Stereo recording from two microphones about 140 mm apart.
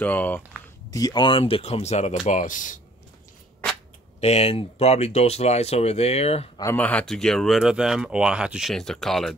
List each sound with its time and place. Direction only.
0.0 s speech: 10° left (ahead or behind)
0.9 s speech: 30° left (ahead or behind); by 2.1 s 55° left (ahead or behind)
2.2 s speech: 65° left (ahead or behind)
4.2 s speech: 45° left (ahead or behind)
6.6 s speech: 15° left (ahead or behind)